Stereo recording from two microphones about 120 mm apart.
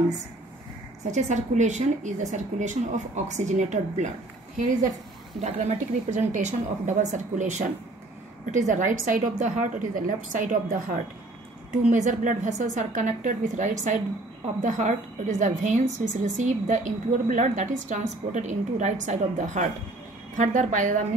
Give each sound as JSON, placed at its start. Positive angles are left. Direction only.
{"t": 1.1, "sound": "a woman's voice", "side_deg": -80}
{"t": 5.4, "sound": "a woman's voice", "side_deg": -80}